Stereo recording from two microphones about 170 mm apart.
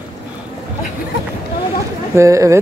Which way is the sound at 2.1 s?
20° right (ahead or behind).